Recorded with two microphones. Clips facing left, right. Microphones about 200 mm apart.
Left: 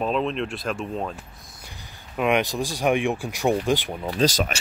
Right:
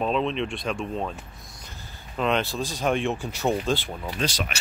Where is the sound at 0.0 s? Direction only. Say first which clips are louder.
Left 1 dB; centre (ahead or behind).